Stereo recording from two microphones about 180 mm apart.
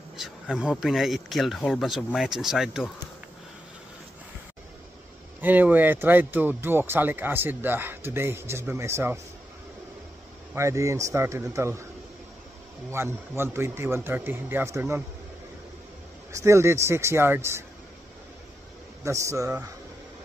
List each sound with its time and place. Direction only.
0.2 s speech: 5° right (ahead or behind)
5.4 s speech: 10° right (ahead or behind)
10.5 s speech: 15° right (ahead or behind)
12.9 s speech: 15° right (ahead or behind)
16.3 s speech: 15° right (ahead or behind)
19.0 s speech: 15° right (ahead or behind)